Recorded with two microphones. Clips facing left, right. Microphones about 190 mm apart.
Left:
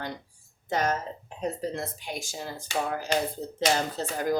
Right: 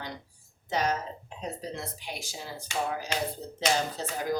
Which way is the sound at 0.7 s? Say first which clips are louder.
Left 2 dB; 50° left (ahead or behind).